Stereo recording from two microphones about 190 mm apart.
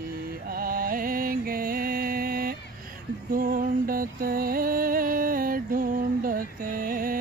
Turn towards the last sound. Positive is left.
turn(degrees=-50)  # may be behind; listen again after turning